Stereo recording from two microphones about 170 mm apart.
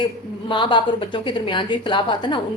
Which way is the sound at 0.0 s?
30° left (ahead or behind).